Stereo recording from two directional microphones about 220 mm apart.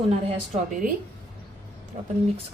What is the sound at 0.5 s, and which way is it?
Speech, 35° right (ahead or behind).